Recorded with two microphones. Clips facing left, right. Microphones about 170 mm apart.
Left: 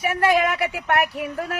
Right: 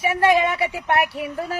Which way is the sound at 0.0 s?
30° right (ahead or behind).